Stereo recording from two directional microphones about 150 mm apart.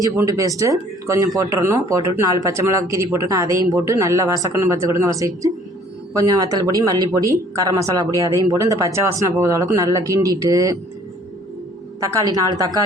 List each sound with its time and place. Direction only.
0.0 s speech: 20° right (ahead or behind)
11.9 s speech: 20° right (ahead or behind)